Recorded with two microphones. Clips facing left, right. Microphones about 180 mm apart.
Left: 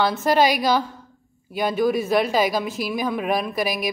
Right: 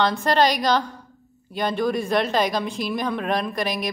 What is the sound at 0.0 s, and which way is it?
A woman's voice, 5° left (ahead or behind).